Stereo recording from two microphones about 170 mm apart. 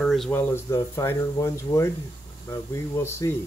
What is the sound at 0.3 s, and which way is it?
Speech, 10° left (ahead or behind).